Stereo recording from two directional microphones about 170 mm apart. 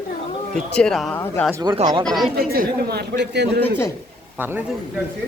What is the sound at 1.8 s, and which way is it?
Speech, 20° right (ahead or behind).